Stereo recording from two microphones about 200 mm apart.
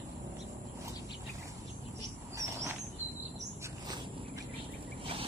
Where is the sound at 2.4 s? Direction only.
15° right (ahead or behind).